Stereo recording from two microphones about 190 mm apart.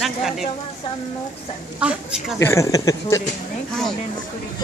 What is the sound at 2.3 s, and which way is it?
Speech, 15° left (ahead or behind).